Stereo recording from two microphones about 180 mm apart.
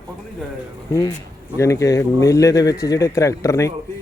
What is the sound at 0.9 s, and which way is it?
Speech, 20° left (ahead or behind).